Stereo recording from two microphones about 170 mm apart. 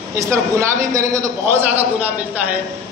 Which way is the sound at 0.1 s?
15° right (ahead or behind).